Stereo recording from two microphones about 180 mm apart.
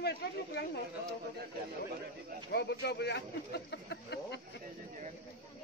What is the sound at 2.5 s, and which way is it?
Speech, 65° left (ahead or behind).